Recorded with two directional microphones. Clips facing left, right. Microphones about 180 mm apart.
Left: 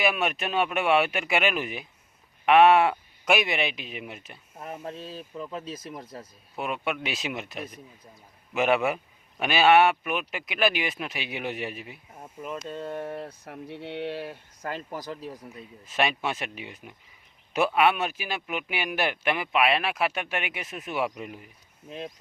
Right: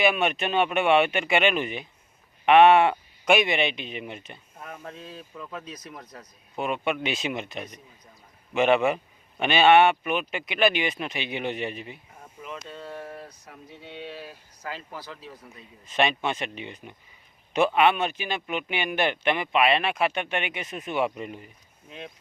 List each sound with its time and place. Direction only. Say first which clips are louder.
0.0 s speech: right 3 dB; centre (ahead or behind)
4.6 s speech: left 4 dB; 25° left (ahead or behind)
6.6 s speech: right 3 dB; centre (ahead or behind)
12.7 s speech: left 5 dB; 20° left (ahead or behind)
13.2 s speech: left 6 dB; 60° left (ahead or behind); by 15.4 s 40° left (ahead or behind)
15.9 s speech: right 2 dB; 5° left (ahead or behind)
21.8 s speech: left 4 dB; 35° left (ahead or behind)